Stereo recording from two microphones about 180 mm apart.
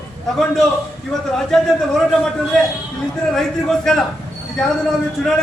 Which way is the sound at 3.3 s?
Centre (ahead or behind).